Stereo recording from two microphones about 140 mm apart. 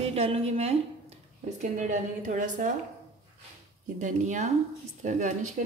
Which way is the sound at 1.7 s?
65° right (ahead or behind).